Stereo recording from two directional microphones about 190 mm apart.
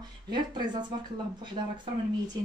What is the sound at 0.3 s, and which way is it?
Speech, 25° right (ahead or behind).